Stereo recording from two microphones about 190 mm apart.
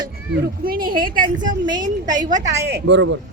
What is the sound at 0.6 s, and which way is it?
Speech, 50° right (ahead or behind).